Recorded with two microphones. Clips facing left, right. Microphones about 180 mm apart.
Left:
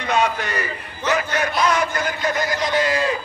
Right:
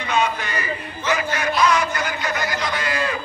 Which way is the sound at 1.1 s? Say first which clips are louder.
Left 1 dB; 45° left (ahead or behind).